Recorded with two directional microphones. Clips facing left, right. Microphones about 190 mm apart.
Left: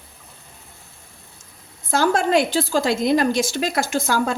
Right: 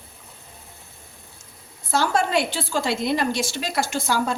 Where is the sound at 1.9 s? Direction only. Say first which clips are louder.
Left 3 dB; 50° left (ahead or behind).